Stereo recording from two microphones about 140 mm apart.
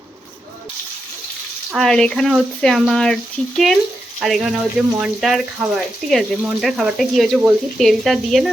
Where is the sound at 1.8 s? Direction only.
5° left (ahead or behind).